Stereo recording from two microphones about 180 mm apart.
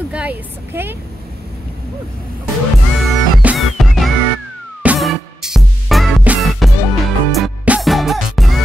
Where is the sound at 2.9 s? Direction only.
Centre (ahead or behind).